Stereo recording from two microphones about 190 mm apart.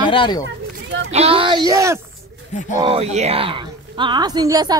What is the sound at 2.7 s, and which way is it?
Speech, 30° right (ahead or behind).